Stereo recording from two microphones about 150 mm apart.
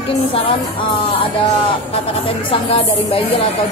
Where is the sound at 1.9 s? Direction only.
40° left (ahead or behind).